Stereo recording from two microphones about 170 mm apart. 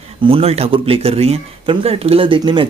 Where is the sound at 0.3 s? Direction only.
35° right (ahead or behind).